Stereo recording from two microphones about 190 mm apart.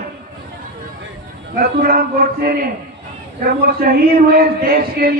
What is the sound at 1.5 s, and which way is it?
A man's voice, 50° right (ahead or behind).